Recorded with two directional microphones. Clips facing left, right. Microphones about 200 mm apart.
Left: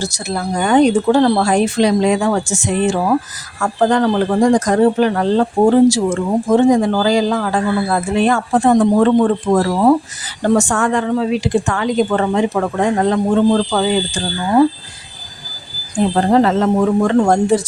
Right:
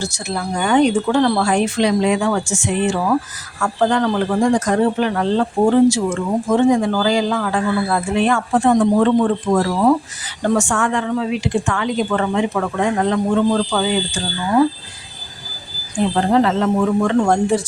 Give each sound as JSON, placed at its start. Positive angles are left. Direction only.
{"t": 0.0, "sound": "speech", "side_deg": 40}
{"t": 16.1, "sound": "speech", "side_deg": 40}